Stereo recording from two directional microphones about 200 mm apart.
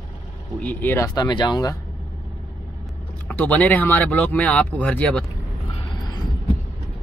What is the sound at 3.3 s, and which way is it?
Speech, 5° left (ahead or behind).